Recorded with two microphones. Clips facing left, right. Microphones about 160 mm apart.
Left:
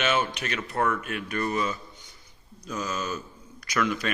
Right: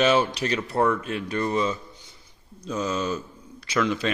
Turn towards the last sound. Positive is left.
turn(degrees=-25)  # may be behind; listen again after turning